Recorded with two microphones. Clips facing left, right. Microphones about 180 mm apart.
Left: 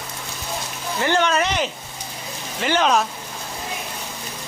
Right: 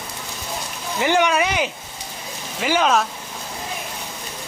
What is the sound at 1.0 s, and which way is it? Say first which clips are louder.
Speech: right 2 dB; 15° right (ahead or behind).